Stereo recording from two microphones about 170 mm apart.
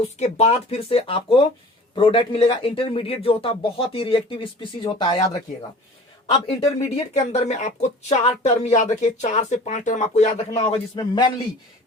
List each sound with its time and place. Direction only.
0.0 s speech: 40° left (ahead or behind)
6.6 s speech: 40° left (ahead or behind)
10.9 s a man's voice: 25° left (ahead or behind)